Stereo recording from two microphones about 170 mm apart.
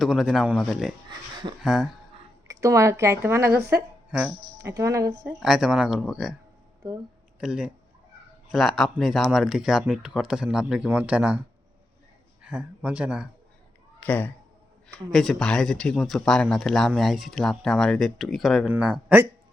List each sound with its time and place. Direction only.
0.0 s speech: centre (ahead or behind)
2.5 s speech: 20° right (ahead or behind)
5.2 s speech: 5° right (ahead or behind)
7.3 s speech: 5° right (ahead or behind)
12.4 s speech: 5° right (ahead or behind)
14.0 s speech: 10° left (ahead or behind); by 19.3 s 10° right (ahead or behind)